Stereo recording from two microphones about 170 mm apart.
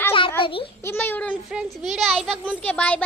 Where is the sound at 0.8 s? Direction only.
15° left (ahead or behind).